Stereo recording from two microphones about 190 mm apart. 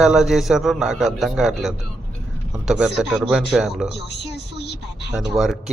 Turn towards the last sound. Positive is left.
turn(degrees=0)  # may be behind; listen again after turning